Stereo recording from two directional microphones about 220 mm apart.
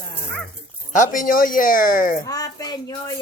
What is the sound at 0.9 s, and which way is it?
Speech, 35° left (ahead or behind).